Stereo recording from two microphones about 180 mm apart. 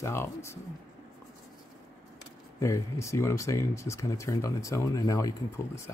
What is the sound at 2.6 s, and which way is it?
Speech, 15° left (ahead or behind).